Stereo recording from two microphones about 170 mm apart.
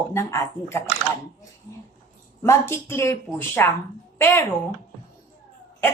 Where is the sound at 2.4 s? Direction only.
15° left (ahead or behind).